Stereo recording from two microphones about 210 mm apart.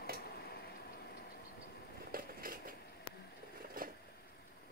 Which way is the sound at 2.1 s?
45° right (ahead or behind).